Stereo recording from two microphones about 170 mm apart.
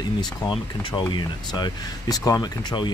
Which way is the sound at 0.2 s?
25° left (ahead or behind).